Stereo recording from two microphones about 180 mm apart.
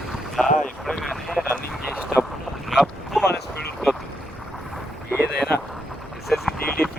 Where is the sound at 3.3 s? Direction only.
65° left (ahead or behind).